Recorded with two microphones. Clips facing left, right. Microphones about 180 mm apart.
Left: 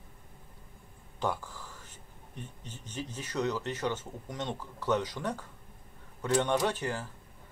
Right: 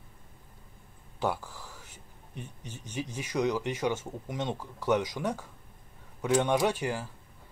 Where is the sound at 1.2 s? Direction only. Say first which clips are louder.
Right 2 dB; 10° right (ahead or behind).